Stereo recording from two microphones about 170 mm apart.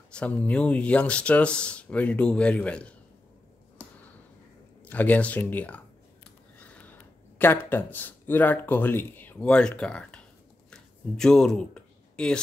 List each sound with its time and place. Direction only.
0.1 s speech: 5° left (ahead or behind)
4.8 s speech: 10° left (ahead or behind)
10.7 s a sound: 5° left (ahead or behind)